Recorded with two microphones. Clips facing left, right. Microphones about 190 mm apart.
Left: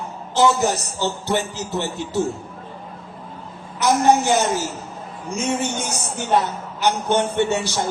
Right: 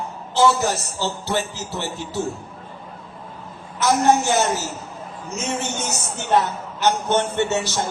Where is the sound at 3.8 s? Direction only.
15° left (ahead or behind).